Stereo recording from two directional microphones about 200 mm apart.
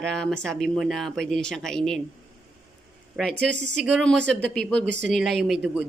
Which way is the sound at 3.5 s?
60° right (ahead or behind).